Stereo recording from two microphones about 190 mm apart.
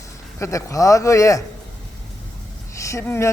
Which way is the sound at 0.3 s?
15° left (ahead or behind).